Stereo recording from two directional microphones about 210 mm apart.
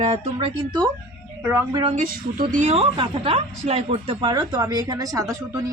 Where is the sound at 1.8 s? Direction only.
40° right (ahead or behind).